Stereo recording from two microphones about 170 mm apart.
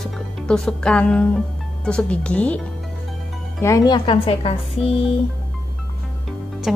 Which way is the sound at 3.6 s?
20° left (ahead or behind).